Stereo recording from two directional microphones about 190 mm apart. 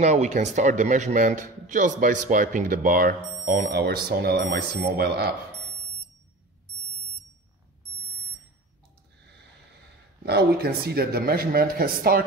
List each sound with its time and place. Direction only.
0.0 s a man's voice: 35° right (ahead or behind); by 5.3 s 55° right (ahead or behind)
10.2 s a man's voice: 55° right (ahead or behind)